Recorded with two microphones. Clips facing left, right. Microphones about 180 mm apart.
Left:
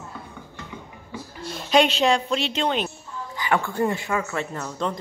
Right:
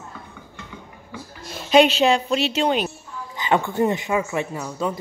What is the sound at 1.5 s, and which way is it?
Speech, 5° right (ahead or behind).